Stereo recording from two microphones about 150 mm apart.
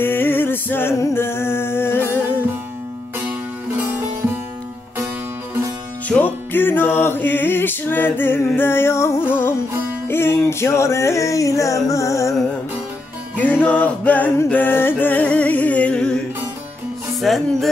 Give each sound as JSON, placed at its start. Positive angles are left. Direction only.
{"t": 0.0, "sound": "music", "side_deg": 15}
{"t": 6.0, "sound": "music", "side_deg": 10}
{"t": 13.4, "sound": "music", "side_deg": 10}
{"t": 17.2, "sound": "music", "side_deg": 0}